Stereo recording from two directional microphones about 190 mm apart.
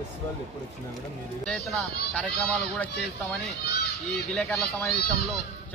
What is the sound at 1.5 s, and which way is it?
A man's voice, 5° left (ahead or behind).